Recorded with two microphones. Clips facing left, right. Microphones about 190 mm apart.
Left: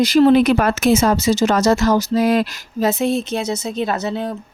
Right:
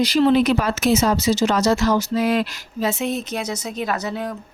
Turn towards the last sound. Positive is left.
turn(degrees=25)  # may be behind; listen again after turning